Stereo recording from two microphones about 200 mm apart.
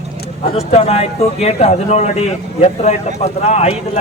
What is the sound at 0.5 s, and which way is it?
Speech, 30° left (ahead or behind).